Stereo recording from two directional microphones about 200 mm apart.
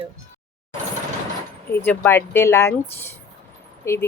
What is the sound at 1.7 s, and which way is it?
A woman's voice, 10° left (ahead or behind).